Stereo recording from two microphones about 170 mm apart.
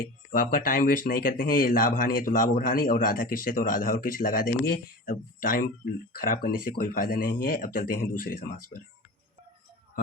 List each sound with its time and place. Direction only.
0.3 s speech: 55° left (ahead or behind)